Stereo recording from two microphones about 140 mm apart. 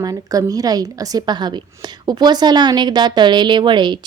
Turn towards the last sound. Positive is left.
turn(degrees=-35)  # may be behind; listen again after turning